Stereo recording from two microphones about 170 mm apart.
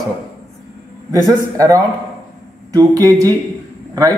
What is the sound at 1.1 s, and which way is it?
A man's voice, 20° right (ahead or behind).